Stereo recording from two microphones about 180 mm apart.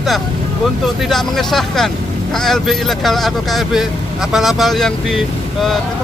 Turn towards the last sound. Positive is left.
turn(degrees=0)  # may be behind; listen again after turning